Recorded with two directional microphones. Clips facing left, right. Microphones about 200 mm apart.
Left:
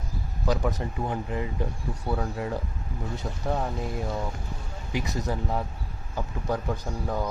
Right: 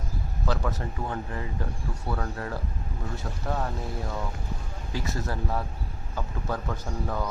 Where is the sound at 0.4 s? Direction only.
15° left (ahead or behind).